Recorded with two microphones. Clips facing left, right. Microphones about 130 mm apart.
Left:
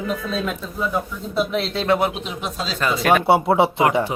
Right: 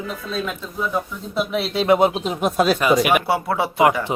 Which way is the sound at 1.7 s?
15° right (ahead or behind).